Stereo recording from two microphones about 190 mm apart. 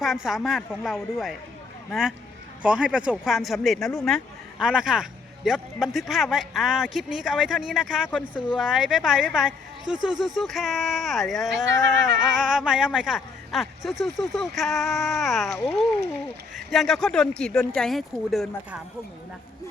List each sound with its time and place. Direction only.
0.0 s speech: centre (ahead or behind)
11.6 s speech: 75° right (ahead or behind)
12.2 s speech: centre (ahead or behind)
16.6 s speech: centre (ahead or behind)